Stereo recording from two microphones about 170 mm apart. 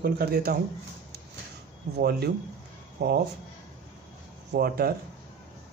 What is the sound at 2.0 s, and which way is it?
Speech, 70° right (ahead or behind).